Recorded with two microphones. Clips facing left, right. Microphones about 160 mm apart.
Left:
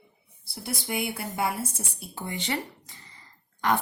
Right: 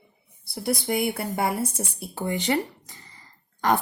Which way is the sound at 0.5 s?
45° right (ahead or behind).